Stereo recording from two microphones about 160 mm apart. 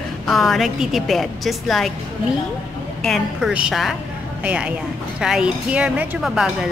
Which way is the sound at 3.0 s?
Centre (ahead or behind).